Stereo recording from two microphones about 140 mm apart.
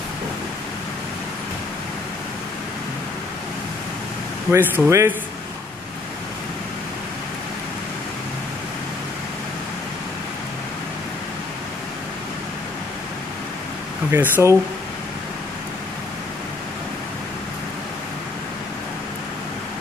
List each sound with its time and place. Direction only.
4.5 s speech: 15° right (ahead or behind)
14.1 s speech: 15° right (ahead or behind)